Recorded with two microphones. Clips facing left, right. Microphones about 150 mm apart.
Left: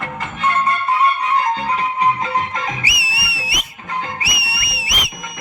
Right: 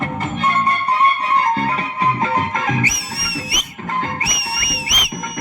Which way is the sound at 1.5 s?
55° right (ahead or behind).